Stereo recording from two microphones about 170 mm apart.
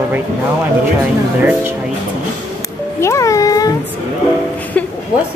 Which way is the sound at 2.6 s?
20° left (ahead or behind).